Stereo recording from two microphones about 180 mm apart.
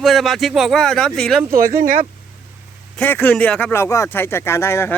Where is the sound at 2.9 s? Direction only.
10° left (ahead or behind).